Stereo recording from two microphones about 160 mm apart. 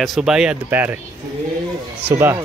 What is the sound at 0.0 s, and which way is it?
Speech, centre (ahead or behind).